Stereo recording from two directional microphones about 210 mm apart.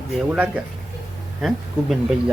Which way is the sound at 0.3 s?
5° right (ahead or behind).